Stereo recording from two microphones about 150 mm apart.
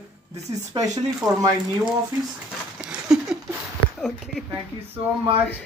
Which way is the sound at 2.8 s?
5° right (ahead or behind).